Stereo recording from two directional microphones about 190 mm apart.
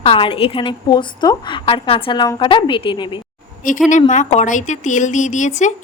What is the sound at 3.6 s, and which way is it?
A woman's voice, 45° left (ahead or behind).